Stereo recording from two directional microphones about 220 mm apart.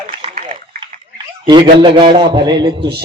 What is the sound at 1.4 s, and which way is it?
Speech, 20° right (ahead or behind).